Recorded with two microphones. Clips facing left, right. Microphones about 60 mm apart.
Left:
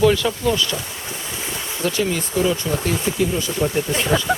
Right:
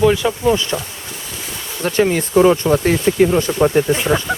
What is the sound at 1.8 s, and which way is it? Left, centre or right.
Speech, right.